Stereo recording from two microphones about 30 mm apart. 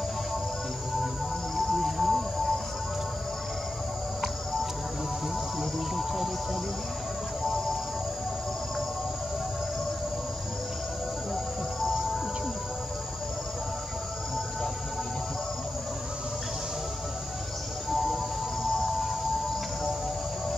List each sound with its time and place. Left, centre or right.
1.6 s music: centre
5.6 s cricket: centre
7.4 s vehicle: centre
17.8 s music: centre